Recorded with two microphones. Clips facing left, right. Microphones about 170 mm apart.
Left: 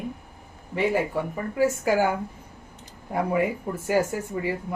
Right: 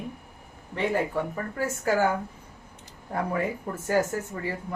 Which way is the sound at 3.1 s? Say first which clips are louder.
Left 4 dB; 10° left (ahead or behind).